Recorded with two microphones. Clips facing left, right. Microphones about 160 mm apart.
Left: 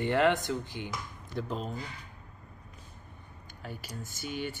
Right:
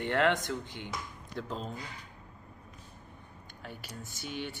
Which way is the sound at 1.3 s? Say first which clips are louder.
Left 3 dB; 5° left (ahead or behind).